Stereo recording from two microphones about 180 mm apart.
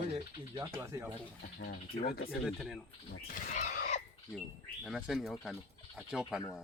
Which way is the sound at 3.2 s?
50° left (ahead or behind).